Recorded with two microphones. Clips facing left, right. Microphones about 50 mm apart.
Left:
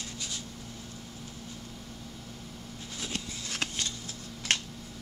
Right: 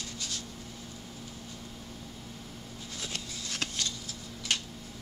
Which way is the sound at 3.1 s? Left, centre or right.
Left.